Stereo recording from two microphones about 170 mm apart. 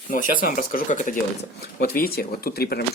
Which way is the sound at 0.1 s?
55° left (ahead or behind).